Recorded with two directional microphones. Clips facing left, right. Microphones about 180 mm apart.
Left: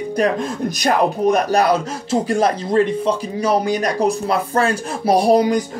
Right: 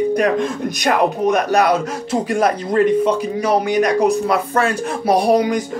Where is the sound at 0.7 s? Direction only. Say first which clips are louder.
Even; 35° left (ahead or behind).